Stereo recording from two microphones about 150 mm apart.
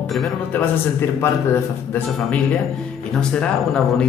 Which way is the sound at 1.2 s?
15° left (ahead or behind).